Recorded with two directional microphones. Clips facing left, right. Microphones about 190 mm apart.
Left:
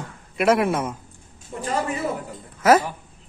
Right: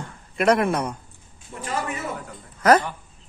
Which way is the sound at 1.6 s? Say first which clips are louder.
Left 3 dB; 35° left (ahead or behind).